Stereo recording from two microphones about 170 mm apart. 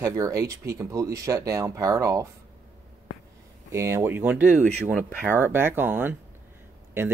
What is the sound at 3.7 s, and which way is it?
Speech, 15° right (ahead or behind).